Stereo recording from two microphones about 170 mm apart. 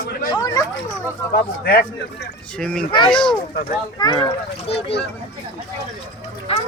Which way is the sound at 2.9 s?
25° left (ahead or behind).